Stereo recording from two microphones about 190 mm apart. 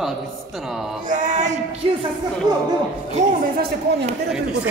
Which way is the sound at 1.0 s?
40° right (ahead or behind).